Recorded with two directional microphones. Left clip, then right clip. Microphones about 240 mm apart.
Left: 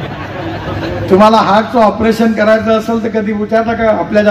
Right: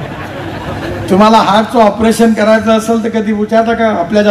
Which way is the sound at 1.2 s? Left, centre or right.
Right.